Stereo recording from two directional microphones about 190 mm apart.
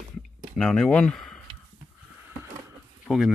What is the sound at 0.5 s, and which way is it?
Speech, centre (ahead or behind).